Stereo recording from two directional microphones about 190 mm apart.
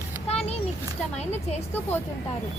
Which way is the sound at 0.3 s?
30° left (ahead or behind).